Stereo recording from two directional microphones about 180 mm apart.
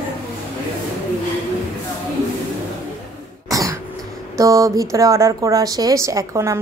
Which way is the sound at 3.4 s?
20° right (ahead or behind).